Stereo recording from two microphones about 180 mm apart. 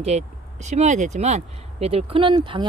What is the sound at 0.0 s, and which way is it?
Speech, 40° right (ahead or behind).